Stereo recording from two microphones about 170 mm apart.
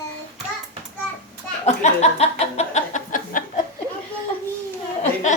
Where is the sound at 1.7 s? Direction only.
40° left (ahead or behind).